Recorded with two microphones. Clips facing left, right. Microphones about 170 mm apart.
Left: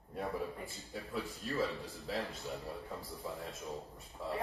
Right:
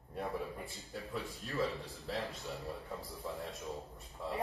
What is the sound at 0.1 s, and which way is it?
A man's voice, centre (ahead or behind).